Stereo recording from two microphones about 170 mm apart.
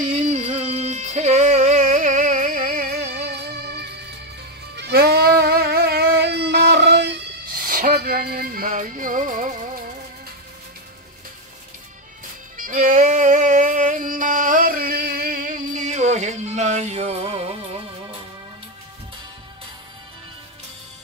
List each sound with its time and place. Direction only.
0.0 s music: 40° right (ahead or behind); by 3.0 s 60° right (ahead or behind)
3.1 s music: 70° right (ahead or behind)
7.6 s music: 55° right (ahead or behind)
12.5 s music: 50° right (ahead or behind)